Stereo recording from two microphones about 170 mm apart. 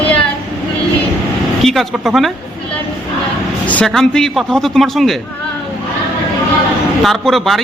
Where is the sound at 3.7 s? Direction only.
5° left (ahead or behind).